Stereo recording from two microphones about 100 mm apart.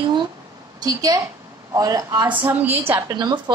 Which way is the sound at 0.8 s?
40° right (ahead or behind).